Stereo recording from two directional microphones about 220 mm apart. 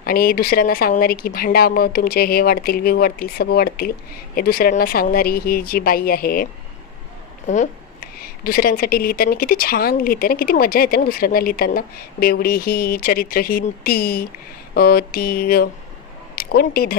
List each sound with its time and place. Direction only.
0.0 s speech: 40° left (ahead or behind)